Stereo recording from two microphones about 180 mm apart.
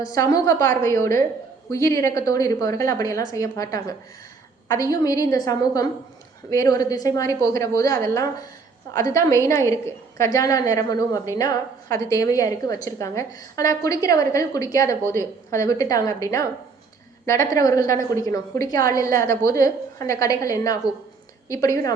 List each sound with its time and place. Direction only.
0.0 s a woman's voice: 20° left (ahead or behind)